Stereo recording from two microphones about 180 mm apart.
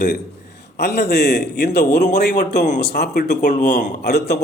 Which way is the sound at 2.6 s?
45° left (ahead or behind).